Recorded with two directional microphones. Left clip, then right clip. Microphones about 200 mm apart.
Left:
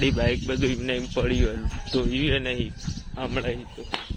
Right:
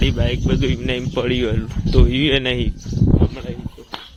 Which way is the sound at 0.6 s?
20° right (ahead or behind).